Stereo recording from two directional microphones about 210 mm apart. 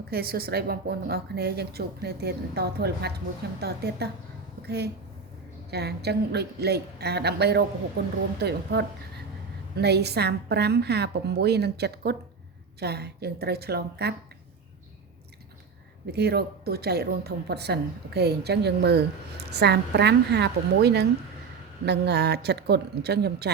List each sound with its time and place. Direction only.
0.1 s speech: 45° right (ahead or behind)
16.1 s speech: 50° right (ahead or behind)